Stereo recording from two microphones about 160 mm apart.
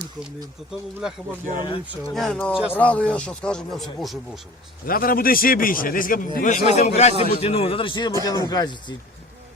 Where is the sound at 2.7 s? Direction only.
10° left (ahead or behind).